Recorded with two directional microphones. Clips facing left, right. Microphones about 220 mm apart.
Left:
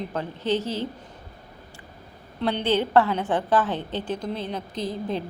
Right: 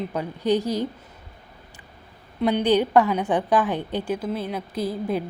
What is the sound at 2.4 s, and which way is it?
A woman's voice, 15° right (ahead or behind).